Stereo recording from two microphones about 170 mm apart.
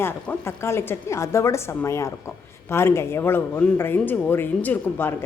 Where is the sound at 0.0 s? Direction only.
15° left (ahead or behind).